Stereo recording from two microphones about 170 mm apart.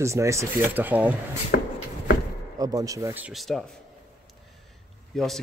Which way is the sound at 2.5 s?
20° right (ahead or behind).